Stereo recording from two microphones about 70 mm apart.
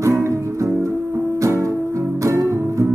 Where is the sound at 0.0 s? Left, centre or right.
Right.